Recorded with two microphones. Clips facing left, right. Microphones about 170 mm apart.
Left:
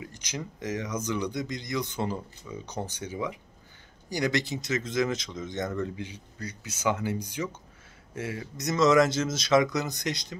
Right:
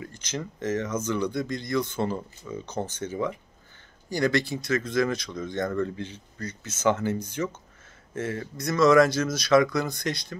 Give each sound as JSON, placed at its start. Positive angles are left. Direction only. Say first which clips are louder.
{"t": 0.0, "sound": "speech", "louder": "right 3 dB", "side_deg": 15}